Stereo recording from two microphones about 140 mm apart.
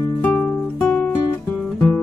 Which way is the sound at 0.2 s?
10° left (ahead or behind).